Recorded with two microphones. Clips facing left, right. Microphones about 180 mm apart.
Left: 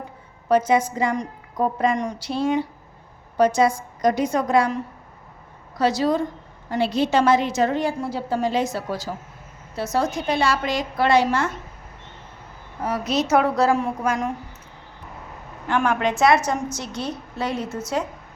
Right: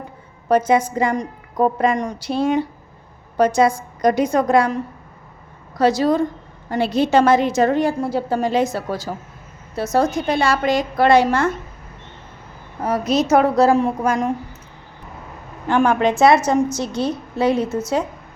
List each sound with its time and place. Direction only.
0.4 s a woman's voice: 50° right (ahead or behind)
5.7 s a woman's voice: 50° right (ahead or behind)
12.8 s a woman's voice: 45° right (ahead or behind)
15.6 s a woman's voice: 30° right (ahead or behind)